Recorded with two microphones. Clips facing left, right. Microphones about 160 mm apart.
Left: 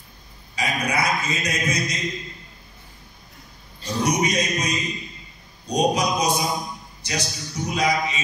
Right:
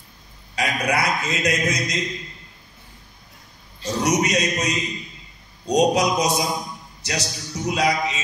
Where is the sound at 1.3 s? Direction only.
70° right (ahead or behind).